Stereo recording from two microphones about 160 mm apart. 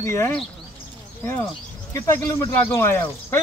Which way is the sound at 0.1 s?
15° left (ahead or behind).